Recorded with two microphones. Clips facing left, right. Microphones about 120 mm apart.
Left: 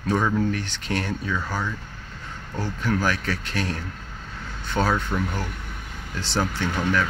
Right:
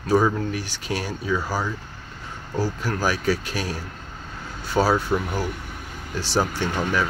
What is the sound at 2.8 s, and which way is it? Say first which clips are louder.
Speech: left 1 dB; 10° right (ahead or behind).